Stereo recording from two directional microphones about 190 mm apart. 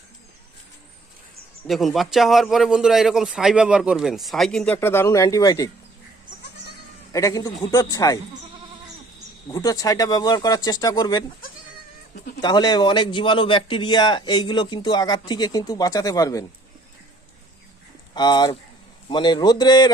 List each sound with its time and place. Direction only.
1.6 s a man's voice: centre (ahead or behind); by 5.7 s 20° left (ahead or behind)
7.1 s a man's voice: 15° left (ahead or behind)
9.5 s a man's voice: 20° left (ahead or behind)
12.4 s a man's voice: 20° left (ahead or behind)
18.1 s a man's voice: 20° left (ahead or behind)